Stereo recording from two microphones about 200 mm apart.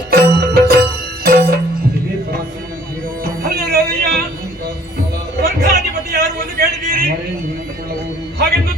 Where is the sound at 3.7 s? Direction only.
50° right (ahead or behind).